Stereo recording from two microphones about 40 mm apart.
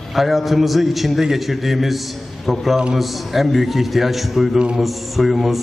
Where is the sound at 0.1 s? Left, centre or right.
Centre.